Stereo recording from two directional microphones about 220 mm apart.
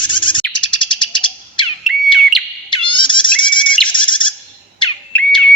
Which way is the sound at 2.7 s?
20° left (ahead or behind).